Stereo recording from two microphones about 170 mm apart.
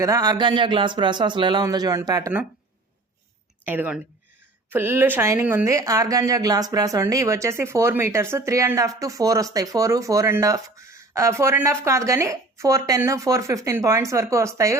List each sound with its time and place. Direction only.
0.0 s speech: 20° right (ahead or behind)
3.7 s speech: 10° right (ahead or behind)